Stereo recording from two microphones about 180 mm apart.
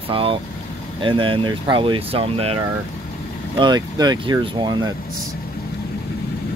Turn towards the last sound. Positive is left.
turn(degrees=-25)  # may be behind; listen again after turning